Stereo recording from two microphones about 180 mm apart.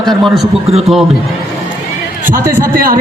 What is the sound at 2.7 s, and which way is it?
Speech, 50° right (ahead or behind).